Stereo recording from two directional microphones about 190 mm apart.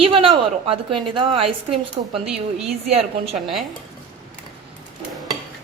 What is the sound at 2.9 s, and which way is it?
Speech, 30° right (ahead or behind).